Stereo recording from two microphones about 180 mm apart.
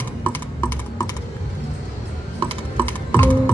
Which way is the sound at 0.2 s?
10° left (ahead or behind).